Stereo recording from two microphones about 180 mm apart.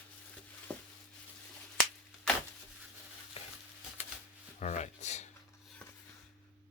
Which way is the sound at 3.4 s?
35° left (ahead or behind).